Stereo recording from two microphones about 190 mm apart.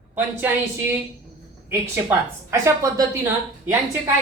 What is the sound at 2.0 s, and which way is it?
A woman's voice, 15° right (ahead or behind).